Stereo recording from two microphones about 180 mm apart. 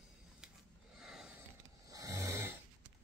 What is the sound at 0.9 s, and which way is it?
Snort, 5° right (ahead or behind).